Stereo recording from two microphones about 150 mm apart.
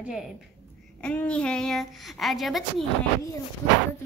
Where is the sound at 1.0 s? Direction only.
5° left (ahead or behind).